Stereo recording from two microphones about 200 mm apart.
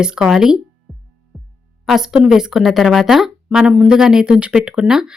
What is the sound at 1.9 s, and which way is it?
Speech, centre (ahead or behind).